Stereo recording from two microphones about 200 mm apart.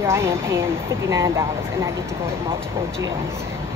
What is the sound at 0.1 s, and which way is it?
Speech, 15° right (ahead or behind).